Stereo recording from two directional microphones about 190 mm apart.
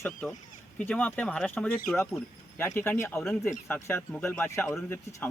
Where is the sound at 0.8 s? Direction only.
5° left (ahead or behind).